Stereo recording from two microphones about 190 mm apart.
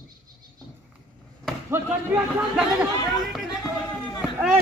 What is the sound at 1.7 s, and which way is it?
Speech, 10° right (ahead or behind).